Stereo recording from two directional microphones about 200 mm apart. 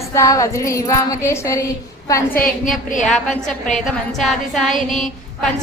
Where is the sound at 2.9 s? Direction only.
40° left (ahead or behind).